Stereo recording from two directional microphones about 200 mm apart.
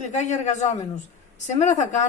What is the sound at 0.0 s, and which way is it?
A woman's voice, 35° left (ahead or behind).